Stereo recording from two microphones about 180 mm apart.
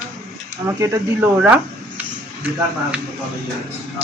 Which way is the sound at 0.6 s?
15° right (ahead or behind).